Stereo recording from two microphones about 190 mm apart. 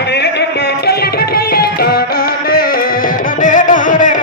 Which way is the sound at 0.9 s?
55° left (ahead or behind).